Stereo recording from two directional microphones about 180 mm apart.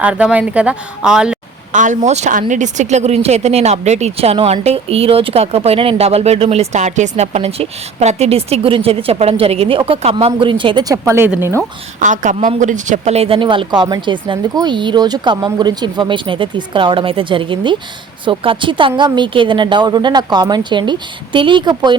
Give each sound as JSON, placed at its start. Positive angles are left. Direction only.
{"t": 0.0, "sound": "a woman's voice", "side_deg": -5}
{"t": 1.7, "sound": "speech", "side_deg": -45}
{"t": 11.9, "sound": "speech", "side_deg": -45}